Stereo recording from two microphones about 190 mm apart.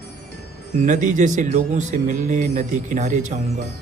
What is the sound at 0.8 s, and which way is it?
Speech, 40° right (ahead or behind).